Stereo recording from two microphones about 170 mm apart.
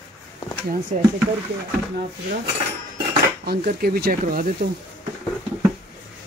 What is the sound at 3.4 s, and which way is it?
A man's voice, 60° right (ahead or behind).